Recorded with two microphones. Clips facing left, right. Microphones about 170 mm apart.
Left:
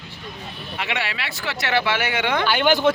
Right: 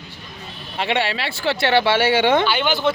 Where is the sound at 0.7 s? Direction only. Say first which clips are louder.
Right 6 dB; 30° right (ahead or behind).